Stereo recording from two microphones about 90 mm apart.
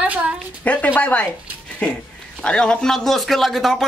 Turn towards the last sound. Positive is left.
turn(degrees=0)  # may be behind; listen again after turning